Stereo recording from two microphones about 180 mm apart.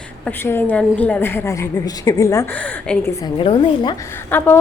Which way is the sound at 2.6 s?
5° left (ahead or behind).